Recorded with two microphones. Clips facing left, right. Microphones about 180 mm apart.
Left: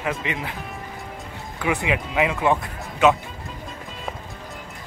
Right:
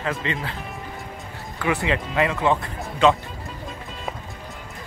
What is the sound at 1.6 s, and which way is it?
Speech, 15° left (ahead or behind).